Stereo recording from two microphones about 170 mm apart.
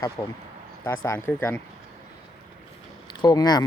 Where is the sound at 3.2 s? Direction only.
25° left (ahead or behind).